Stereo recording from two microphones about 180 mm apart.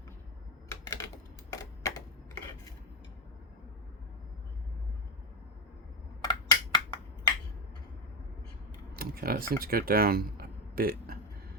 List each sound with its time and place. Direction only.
0.7 s typewriter: 15° left (ahead or behind)
6.2 s a sound: 20° left (ahead or behind)
9.0 s speech: 55° right (ahead or behind)